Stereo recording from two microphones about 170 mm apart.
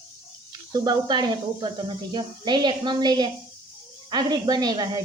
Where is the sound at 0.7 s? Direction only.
25° right (ahead or behind).